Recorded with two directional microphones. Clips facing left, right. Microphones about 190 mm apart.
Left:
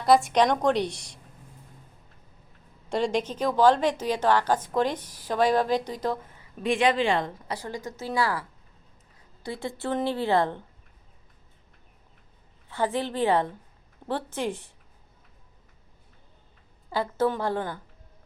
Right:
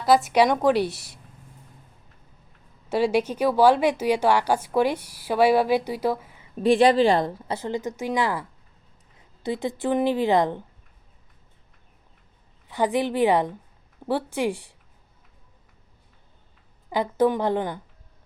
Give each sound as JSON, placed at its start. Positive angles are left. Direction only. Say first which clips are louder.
{"t": 0.0, "sound": "a woman's voice", "louder": "right 2 dB", "side_deg": 0}
{"t": 2.9, "sound": "a woman's voice", "louder": "right 4 dB", "side_deg": -5}
{"t": 6.6, "sound": "a woman's voice", "louder": "right 6 dB", "side_deg": -35}
{"t": 12.6, "sound": "a woman's voice", "louder": "right 4 dB", "side_deg": -15}
{"t": 16.9, "sound": "a woman's voice", "louder": "right 4 dB", "side_deg": -15}